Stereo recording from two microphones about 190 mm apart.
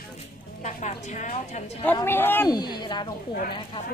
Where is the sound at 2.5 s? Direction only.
20° left (ahead or behind).